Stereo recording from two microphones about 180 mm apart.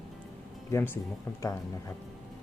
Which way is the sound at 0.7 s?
10° left (ahead or behind).